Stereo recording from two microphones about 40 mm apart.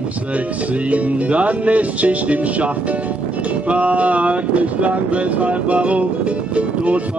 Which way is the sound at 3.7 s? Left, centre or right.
Right.